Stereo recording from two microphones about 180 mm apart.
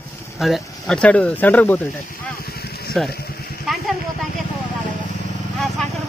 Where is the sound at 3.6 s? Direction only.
Centre (ahead or behind).